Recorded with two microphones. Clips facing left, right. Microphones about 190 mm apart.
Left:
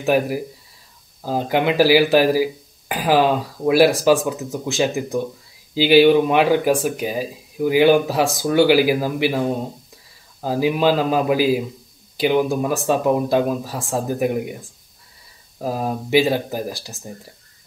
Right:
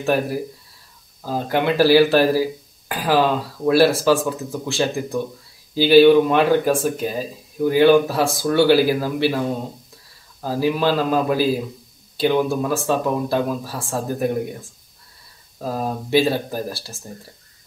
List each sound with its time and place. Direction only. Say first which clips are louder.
0.0 s speech: left 2 dB; 15° left (ahead or behind)
10.4 s speech: left 2 dB; 15° left (ahead or behind)
15.6 s speech: left 1 dB; 10° left (ahead or behind)